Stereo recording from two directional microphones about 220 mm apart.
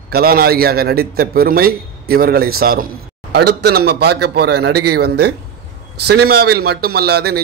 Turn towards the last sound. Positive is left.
turn(degrees=-45)  # may be behind; listen again after turning